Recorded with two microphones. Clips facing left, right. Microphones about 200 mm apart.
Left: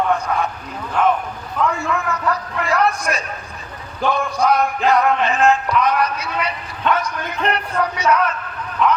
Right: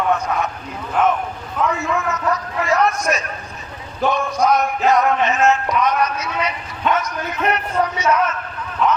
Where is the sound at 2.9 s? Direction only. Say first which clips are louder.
Right 1 dB; 30° left (ahead or behind).